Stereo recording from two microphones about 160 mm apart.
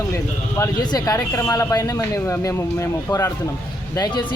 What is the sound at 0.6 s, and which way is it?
Speech, 25° left (ahead or behind).